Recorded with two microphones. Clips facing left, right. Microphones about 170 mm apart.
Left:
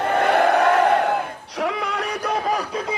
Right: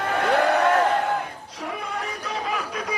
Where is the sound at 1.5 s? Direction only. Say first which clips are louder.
Left 8 dB; 90° left.